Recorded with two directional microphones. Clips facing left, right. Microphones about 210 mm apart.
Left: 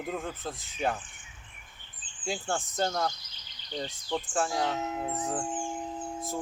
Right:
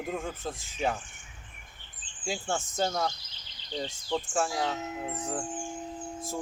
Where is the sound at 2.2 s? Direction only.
Centre (ahead or behind).